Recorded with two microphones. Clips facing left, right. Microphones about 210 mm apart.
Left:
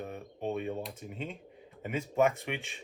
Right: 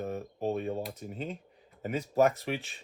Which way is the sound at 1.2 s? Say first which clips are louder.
Right 2 dB; centre (ahead or behind).